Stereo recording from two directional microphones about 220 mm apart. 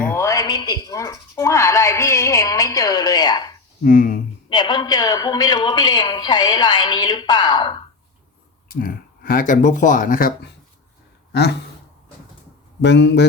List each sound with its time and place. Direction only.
0.0 s speech: 10° left (ahead or behind)
3.8 s speech: 40° left (ahead or behind)
4.4 s a man's voice: 20° left (ahead or behind)
8.7 s speech: 40° left (ahead or behind)
11.3 s a sound: 50° left (ahead or behind)
12.8 s a man's voice: 50° left (ahead or behind)